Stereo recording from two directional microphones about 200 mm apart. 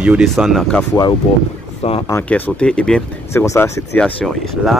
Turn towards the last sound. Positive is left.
turn(degrees=5)  # may be behind; listen again after turning